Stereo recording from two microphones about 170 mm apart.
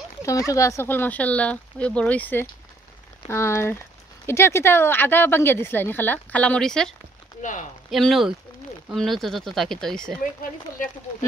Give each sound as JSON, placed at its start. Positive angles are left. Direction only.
{"t": 0.2, "sound": "speech", "side_deg": 20}
{"t": 10.2, "sound": "speech", "side_deg": 50}